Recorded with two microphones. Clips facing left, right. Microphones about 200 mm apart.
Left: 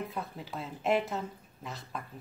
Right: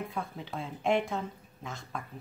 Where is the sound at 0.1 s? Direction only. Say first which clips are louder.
Right 1 dB; centre (ahead or behind).